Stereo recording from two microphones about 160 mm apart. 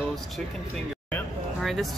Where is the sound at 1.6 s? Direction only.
Centre (ahead or behind).